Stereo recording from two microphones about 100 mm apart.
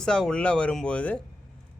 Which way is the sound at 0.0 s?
5° left (ahead or behind).